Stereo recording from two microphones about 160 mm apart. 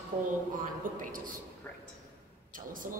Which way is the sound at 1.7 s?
15° left (ahead or behind).